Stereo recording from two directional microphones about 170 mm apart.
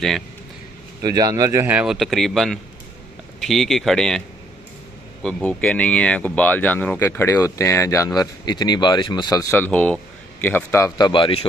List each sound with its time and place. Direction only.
1.0 s a man's voice: 20° right (ahead or behind); by 4.2 s centre (ahead or behind)
5.2 s speech: 5° left (ahead or behind)
11.1 s speech: 30° left (ahead or behind)